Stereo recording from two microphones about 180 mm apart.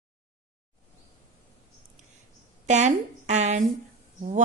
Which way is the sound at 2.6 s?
40° right (ahead or behind).